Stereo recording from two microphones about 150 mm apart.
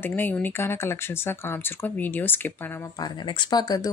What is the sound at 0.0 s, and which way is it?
Speech, 15° left (ahead or behind).